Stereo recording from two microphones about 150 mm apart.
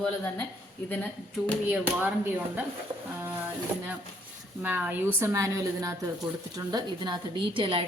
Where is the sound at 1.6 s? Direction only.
10° right (ahead or behind).